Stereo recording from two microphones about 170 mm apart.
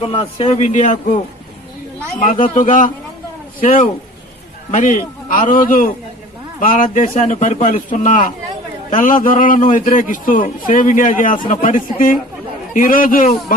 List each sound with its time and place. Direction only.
0.0 s speech: 35° left (ahead or behind)
0.6 s a man's voice: 45° left (ahead or behind)
2.1 s a man's voice: 50° left (ahead or behind)